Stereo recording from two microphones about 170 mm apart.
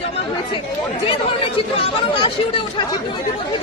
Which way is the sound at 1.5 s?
30° left (ahead or behind).